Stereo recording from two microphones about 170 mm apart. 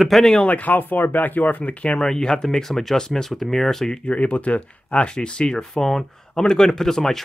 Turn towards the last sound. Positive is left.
turn(degrees=0)  # may be behind; listen again after turning